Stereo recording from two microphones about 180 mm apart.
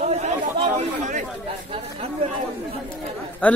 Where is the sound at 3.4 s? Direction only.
5° left (ahead or behind).